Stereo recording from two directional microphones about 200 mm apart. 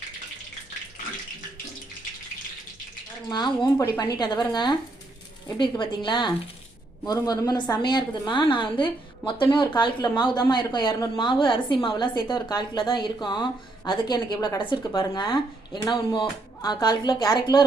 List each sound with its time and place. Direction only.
3.2 s a woman's voice: 20° left (ahead or behind)